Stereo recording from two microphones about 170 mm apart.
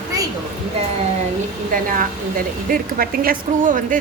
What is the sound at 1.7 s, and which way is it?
A woman's voice, 55° right (ahead or behind).